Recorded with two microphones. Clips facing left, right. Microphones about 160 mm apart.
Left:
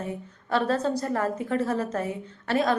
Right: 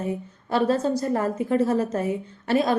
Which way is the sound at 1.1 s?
25° right (ahead or behind).